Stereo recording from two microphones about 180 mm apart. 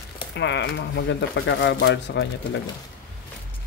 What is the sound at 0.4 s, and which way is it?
Speech, 75° left (ahead or behind).